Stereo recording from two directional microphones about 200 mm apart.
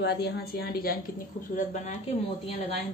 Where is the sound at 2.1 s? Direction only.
30° left (ahead or behind).